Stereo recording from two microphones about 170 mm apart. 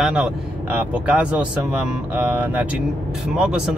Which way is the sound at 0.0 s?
5° right (ahead or behind).